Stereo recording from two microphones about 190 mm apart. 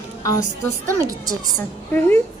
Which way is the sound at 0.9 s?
15° right (ahead or behind).